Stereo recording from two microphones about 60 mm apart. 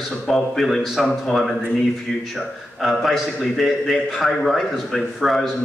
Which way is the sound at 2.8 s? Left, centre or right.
Centre.